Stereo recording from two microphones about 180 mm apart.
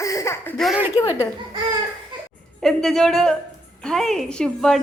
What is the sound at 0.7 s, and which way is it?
Speech, 10° right (ahead or behind).